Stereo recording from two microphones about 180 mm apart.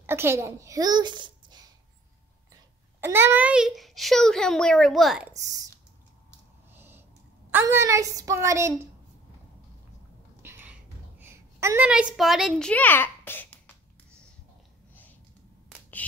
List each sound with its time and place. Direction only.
0.0 s a child's voice: 15° right (ahead or behind)
3.0 s a child's voice: 10° right (ahead or behind)
6.7 s owl: 10° right (ahead or behind)
7.5 s a woman's voice: 15° right (ahead or behind)
10.4 s a sound: 15° right (ahead or behind)
11.1 s a woman's voice: 15° right (ahead or behind); by 13.6 s 10° left (ahead or behind)